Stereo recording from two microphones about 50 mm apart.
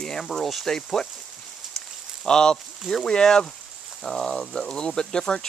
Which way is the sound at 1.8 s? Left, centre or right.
Centre.